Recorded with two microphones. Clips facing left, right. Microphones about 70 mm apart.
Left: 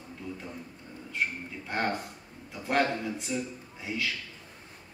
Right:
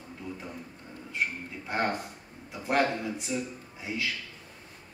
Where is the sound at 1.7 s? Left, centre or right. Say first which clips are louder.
Right 1 dB; centre.